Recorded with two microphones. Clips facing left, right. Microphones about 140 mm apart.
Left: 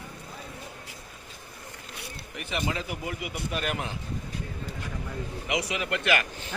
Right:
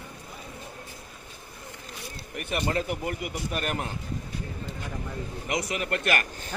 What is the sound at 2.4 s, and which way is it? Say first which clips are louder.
A man's voice: right 3 dB; 50° right (ahead or behind).